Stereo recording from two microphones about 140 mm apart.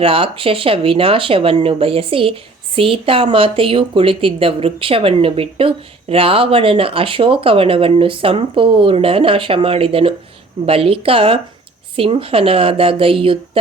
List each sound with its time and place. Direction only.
0.0 s a woman's voice: 40° right (ahead or behind)